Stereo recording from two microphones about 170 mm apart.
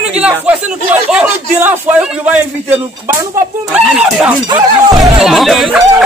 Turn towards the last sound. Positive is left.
turn(degrees=0)  # may be behind; listen again after turning